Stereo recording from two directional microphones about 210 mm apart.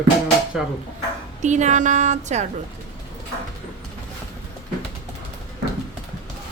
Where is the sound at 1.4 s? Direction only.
35° right (ahead or behind).